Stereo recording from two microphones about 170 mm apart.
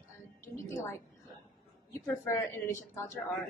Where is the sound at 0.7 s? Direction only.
15° left (ahead or behind).